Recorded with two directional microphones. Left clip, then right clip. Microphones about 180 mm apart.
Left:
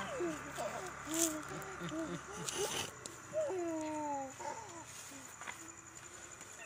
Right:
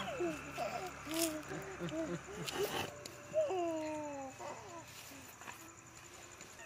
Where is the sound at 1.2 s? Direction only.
40° right (ahead or behind).